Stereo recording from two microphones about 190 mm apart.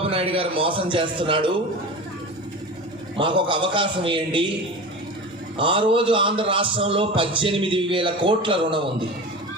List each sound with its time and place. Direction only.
0.0 s a man's voice: 30° right (ahead or behind)
3.2 s a man's voice: 25° right (ahead or behind)
5.5 s a man's voice: 25° right (ahead or behind)